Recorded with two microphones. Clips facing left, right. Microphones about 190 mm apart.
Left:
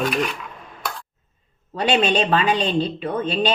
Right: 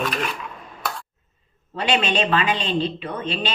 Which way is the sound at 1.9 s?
35° left (ahead or behind).